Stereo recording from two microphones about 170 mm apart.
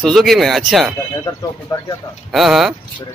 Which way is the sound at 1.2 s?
20° left (ahead or behind).